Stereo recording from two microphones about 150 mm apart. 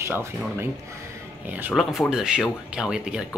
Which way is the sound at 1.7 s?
Centre (ahead or behind).